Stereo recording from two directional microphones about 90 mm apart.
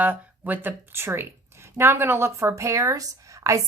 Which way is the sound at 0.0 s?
20° right (ahead or behind).